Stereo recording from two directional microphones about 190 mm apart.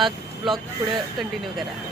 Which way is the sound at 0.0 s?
Centre (ahead or behind).